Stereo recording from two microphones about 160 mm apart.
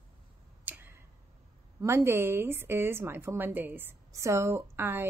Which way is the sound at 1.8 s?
15° right (ahead or behind).